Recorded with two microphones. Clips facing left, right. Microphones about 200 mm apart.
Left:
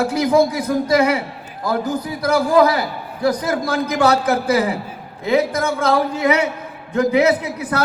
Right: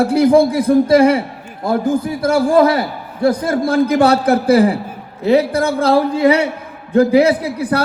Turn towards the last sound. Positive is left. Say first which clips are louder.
# right 4 dB
turn(degrees=-35)  # may be behind; listen again after turning